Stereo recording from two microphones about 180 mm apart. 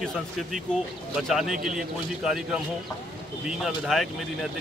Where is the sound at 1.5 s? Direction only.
50° right (ahead or behind).